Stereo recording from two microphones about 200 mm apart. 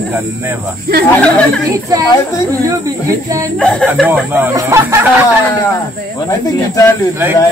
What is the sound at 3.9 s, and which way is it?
Speech, 5° right (ahead or behind).